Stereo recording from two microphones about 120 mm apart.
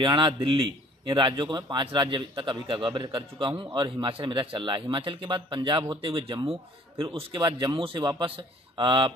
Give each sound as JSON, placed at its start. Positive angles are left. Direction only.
{"t": 0.0, "sound": "a man's voice", "side_deg": -40}